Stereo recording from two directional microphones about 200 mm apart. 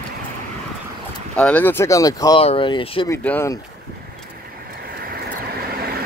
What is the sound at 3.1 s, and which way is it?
Speech, 10° left (ahead or behind).